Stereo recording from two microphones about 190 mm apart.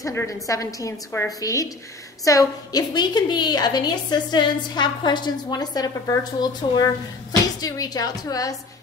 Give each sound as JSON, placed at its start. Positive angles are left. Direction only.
{"t": 0.0, "sound": "a woman's voice", "side_deg": 15}